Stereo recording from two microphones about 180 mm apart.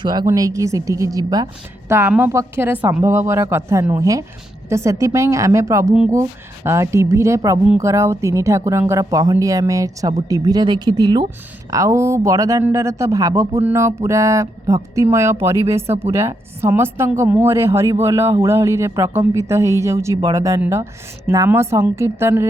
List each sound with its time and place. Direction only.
0.0 s a woman's voice: 25° right (ahead or behind)